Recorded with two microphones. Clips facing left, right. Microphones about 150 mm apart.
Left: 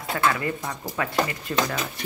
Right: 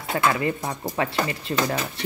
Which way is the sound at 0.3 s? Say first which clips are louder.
Right 3 dB; 25° right (ahead or behind).